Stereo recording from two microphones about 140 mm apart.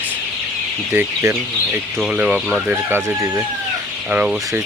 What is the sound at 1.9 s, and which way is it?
Speech, 5° right (ahead or behind).